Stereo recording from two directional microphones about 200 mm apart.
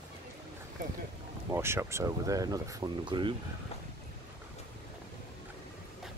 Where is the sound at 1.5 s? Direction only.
15° right (ahead or behind).